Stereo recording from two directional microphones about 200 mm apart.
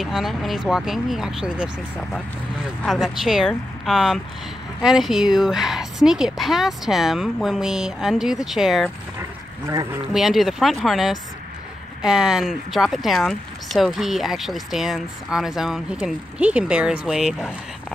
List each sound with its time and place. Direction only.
0.0 s speech: centre (ahead or behind)
10.1 s speech: centre (ahead or behind)